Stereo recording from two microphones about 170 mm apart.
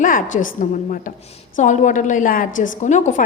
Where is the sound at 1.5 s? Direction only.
45° left (ahead or behind).